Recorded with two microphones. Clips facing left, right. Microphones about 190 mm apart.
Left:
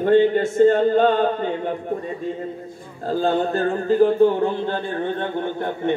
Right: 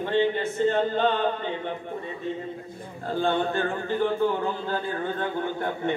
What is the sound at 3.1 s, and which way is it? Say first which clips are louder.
Speech: left 5 dB; 40° left (ahead or behind).